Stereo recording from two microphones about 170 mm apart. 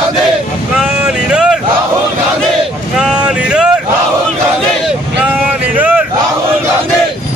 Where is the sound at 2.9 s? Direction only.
5° right (ahead or behind).